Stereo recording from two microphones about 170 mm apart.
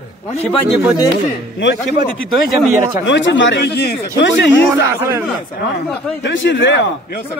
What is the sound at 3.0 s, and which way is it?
Speech, 90° left.